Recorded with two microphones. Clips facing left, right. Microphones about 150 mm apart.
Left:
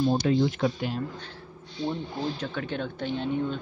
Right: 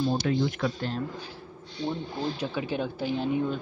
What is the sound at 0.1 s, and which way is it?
Speech, 20° left (ahead or behind).